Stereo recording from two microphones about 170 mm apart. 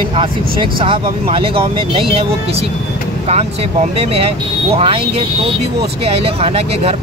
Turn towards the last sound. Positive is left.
turn(degrees=-35)  # may be behind; listen again after turning